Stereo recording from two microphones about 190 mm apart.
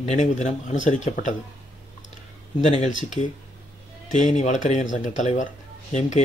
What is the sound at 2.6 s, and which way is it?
Speech, 40° left (ahead or behind).